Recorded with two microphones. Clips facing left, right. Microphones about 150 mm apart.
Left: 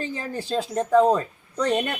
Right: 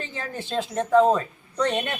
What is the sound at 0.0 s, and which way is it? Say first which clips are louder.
Speech: left 3 dB; 35° left (ahead or behind).